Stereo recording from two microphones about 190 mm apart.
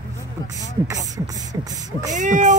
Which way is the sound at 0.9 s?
20° right (ahead or behind).